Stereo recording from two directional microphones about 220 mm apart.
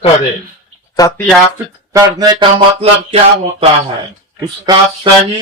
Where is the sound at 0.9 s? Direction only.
15° left (ahead or behind).